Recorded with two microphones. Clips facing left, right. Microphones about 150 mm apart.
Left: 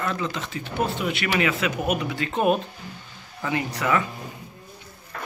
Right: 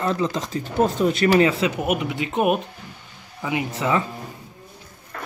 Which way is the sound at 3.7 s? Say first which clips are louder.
Right 1 dB; 25° right (ahead or behind).